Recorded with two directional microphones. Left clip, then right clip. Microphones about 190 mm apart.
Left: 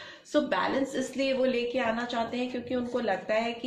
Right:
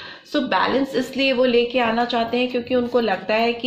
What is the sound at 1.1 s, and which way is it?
Speech, 35° right (ahead or behind).